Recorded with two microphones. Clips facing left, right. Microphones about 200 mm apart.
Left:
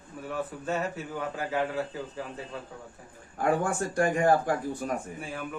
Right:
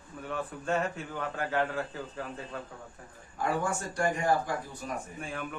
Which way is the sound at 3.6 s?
55° left (ahead or behind).